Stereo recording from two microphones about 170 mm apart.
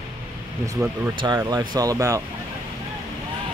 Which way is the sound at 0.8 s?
15° right (ahead or behind).